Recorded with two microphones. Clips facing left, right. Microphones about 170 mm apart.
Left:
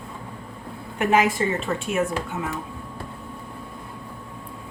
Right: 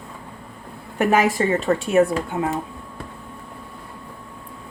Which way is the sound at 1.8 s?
35° right (ahead or behind).